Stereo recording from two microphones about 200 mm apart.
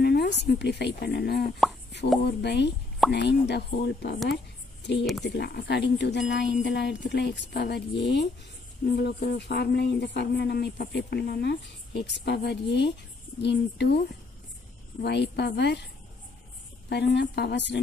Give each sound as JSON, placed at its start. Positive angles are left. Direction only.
{"t": 0.0, "sound": "a woman's voice", "side_deg": 55}
{"t": 5.2, "sound": "speech", "side_deg": 55}
{"t": 16.9, "sound": "speech", "side_deg": 55}